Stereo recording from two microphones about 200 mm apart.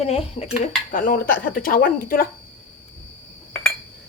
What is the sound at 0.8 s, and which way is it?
Speech, 45° left (ahead or behind).